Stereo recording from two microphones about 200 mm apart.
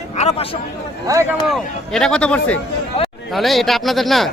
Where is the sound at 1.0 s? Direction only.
15° right (ahead or behind).